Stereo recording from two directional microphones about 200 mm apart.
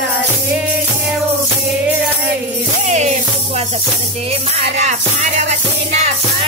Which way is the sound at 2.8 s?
35° right (ahead or behind).